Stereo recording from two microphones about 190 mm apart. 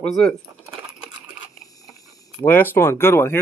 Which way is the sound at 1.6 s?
20° left (ahead or behind).